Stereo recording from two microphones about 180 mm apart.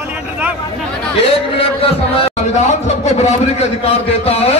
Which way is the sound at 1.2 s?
30° left (ahead or behind).